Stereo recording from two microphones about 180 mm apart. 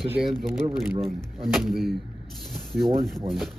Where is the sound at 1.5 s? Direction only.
Centre (ahead or behind).